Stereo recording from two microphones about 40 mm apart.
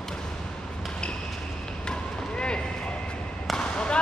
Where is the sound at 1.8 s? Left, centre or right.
Left.